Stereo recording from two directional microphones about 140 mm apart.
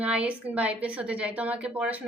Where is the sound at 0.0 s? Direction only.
10° right (ahead or behind).